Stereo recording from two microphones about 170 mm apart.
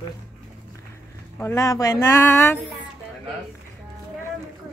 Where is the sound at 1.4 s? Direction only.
20° left (ahead or behind).